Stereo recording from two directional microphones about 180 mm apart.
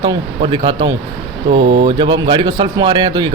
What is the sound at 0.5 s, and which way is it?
A man's voice, 25° right (ahead or behind).